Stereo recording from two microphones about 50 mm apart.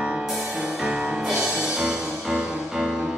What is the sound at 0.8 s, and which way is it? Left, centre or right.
Music, centre.